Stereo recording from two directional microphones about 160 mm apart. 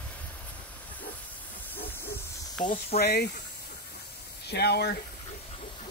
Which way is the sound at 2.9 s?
90° left.